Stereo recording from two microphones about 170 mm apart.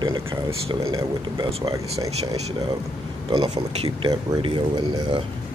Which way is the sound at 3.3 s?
30° right (ahead or behind).